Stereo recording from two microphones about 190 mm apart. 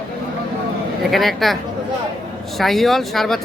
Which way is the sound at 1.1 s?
Centre (ahead or behind).